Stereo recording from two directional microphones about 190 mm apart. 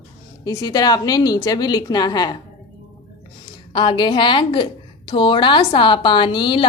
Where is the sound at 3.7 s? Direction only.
25° left (ahead or behind).